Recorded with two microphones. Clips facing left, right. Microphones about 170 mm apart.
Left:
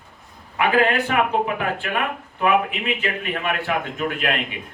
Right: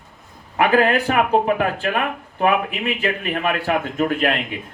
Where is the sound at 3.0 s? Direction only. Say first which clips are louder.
Right 3 dB; 40° right (ahead or behind).